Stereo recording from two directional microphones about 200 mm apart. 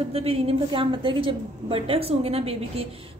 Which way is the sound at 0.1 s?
30° right (ahead or behind).